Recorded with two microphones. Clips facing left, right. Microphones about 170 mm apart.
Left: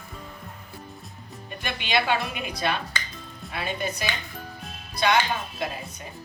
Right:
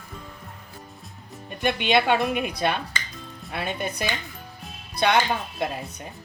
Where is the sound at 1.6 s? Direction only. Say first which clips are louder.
Right 5 dB; 55° right (ahead or behind).